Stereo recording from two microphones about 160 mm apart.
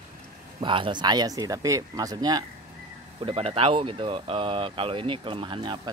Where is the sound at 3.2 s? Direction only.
35° right (ahead or behind).